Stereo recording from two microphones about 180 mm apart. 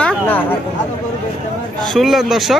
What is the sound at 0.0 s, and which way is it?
Chatter, 10° left (ahead or behind).